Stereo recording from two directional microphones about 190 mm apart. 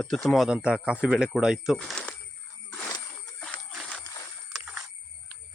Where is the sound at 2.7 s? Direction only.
15° left (ahead or behind).